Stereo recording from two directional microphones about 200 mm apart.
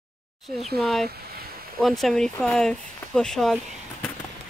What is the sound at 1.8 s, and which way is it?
Speech, centre (ahead or behind).